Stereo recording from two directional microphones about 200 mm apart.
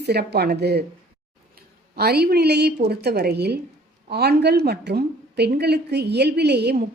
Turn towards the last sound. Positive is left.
turn(degrees=-55)  # may be behind; listen again after turning